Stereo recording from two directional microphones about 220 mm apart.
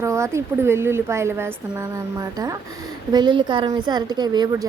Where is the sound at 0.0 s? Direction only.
10° right (ahead or behind).